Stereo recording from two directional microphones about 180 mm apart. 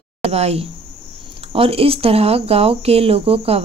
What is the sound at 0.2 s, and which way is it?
Speech, 35° right (ahead or behind).